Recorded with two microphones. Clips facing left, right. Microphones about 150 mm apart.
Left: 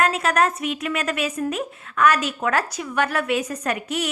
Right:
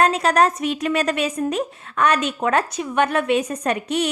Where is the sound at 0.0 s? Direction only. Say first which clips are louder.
Right 3 dB; 30° right (ahead or behind).